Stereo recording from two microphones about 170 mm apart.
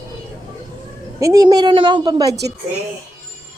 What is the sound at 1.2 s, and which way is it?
A woman's voice, 20° right (ahead or behind).